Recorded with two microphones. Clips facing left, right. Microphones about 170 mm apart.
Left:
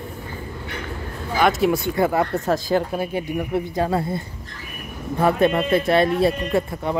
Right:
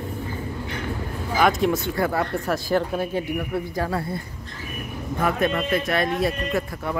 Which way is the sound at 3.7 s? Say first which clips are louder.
Left 4 dB; 25° left (ahead or behind).